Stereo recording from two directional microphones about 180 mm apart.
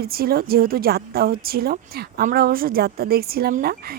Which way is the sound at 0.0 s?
55° right (ahead or behind).